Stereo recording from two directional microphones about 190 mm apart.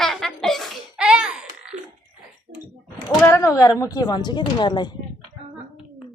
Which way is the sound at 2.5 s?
45° right (ahead or behind).